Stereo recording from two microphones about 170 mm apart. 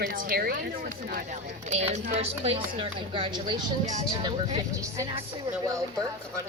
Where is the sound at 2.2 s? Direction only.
35° right (ahead or behind).